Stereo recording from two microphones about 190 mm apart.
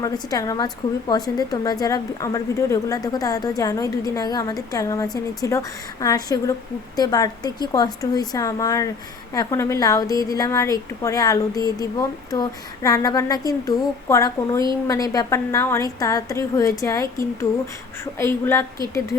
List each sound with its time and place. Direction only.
0.0 s a woman's voice: 20° left (ahead or behind)